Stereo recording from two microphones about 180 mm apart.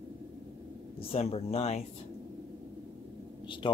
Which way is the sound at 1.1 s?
35° left (ahead or behind).